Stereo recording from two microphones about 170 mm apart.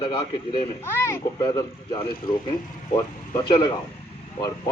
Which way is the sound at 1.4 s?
30° left (ahead or behind).